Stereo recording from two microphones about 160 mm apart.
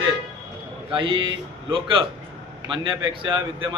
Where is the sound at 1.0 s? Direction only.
30° right (ahead or behind).